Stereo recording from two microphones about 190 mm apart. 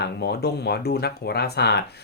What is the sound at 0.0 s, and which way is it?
Speech, 60° left (ahead or behind).